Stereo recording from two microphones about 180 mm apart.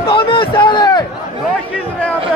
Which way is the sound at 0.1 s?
25° left (ahead or behind).